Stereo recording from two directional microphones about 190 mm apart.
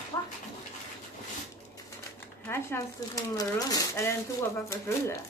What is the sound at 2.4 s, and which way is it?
Speech, 15° left (ahead or behind).